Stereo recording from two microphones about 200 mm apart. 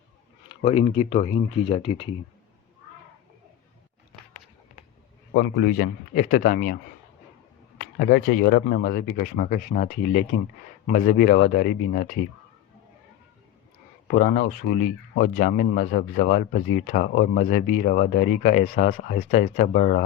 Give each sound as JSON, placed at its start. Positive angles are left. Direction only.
{"t": 0.4, "sound": "speech", "side_deg": 30}
{"t": 5.3, "sound": "speech", "side_deg": 50}
{"t": 7.8, "sound": "speech", "side_deg": 50}
{"t": 14.1, "sound": "speech", "side_deg": 45}